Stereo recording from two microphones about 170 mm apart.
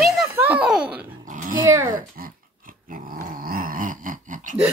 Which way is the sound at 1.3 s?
50° right (ahead or behind).